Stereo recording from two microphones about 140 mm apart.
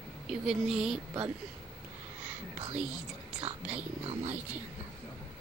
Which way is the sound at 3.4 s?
45° right (ahead or behind).